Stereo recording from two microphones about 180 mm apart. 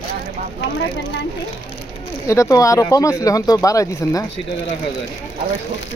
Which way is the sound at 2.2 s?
15° left (ahead or behind).